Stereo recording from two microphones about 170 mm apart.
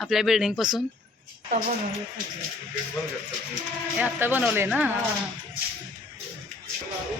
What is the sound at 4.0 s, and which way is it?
Speech, 10° right (ahead or behind).